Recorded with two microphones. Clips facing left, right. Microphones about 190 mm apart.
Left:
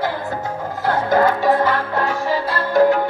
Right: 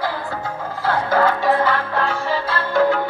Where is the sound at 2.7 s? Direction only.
40° left (ahead or behind).